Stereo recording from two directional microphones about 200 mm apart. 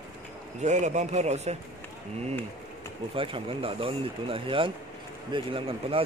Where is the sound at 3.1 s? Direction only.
25° right (ahead or behind).